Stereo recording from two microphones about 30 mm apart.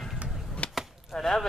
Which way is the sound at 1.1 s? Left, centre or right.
Centre.